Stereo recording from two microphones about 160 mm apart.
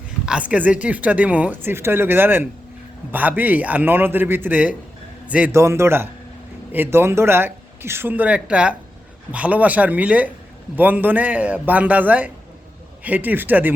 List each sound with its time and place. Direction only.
0.3 s speech: 10° right (ahead or behind)